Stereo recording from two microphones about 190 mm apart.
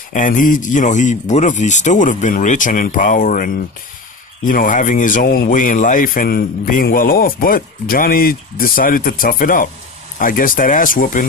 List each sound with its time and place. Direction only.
0.1 s speech: 45° left (ahead or behind)